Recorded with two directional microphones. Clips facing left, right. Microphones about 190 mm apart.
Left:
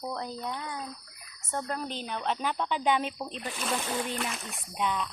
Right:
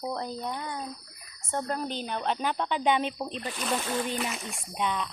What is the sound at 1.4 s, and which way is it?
Speech, 25° right (ahead or behind).